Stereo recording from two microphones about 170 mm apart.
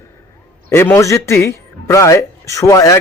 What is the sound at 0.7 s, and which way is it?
A man's voice, 15° left (ahead or behind).